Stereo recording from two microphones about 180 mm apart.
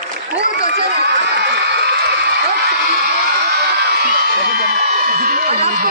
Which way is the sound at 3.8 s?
65° right (ahead or behind).